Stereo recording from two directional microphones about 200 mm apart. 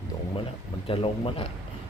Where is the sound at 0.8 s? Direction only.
25° left (ahead or behind).